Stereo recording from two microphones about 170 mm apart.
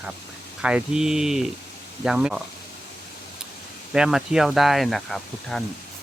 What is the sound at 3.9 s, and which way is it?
Speech, 5° right (ahead or behind).